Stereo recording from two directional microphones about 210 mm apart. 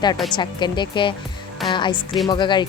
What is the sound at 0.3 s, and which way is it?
Speech, 20° left (ahead or behind).